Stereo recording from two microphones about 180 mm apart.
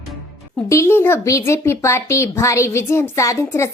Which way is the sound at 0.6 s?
15° left (ahead or behind).